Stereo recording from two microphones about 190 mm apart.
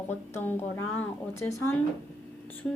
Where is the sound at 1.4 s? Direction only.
15° left (ahead or behind).